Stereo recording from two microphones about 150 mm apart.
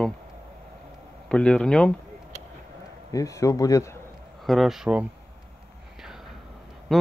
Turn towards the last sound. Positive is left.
turn(degrees=0)  # may be behind; listen again after turning